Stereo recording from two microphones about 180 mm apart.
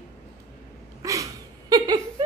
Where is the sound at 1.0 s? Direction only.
20° right (ahead or behind).